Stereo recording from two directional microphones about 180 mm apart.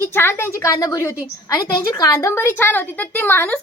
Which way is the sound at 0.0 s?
15° left (ahead or behind).